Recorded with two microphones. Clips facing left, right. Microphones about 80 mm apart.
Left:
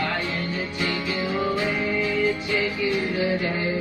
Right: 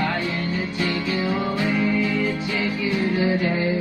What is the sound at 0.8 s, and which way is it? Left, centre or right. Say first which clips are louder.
Music: right 2 dB; centre.